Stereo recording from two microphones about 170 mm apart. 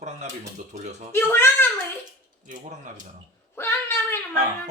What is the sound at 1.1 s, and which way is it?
Speech, 15° left (ahead or behind).